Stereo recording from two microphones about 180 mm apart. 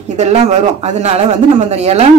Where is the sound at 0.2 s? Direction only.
40° right (ahead or behind).